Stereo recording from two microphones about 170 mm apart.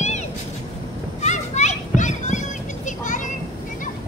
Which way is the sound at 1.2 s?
45° left (ahead or behind).